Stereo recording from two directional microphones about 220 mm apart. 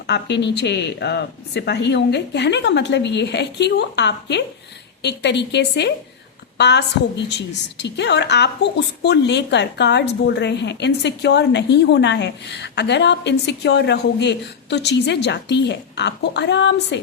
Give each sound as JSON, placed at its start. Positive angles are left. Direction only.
{"t": 0.1, "sound": "a woman's voice", "side_deg": 55}